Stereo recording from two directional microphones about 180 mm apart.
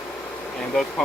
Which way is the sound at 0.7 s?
Centre (ahead or behind).